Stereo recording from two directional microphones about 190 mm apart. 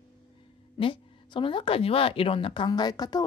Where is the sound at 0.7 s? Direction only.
25° left (ahead or behind).